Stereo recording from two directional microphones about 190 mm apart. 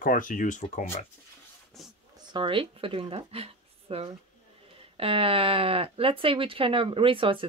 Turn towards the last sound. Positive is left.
turn(degrees=-25)  # may be behind; listen again after turning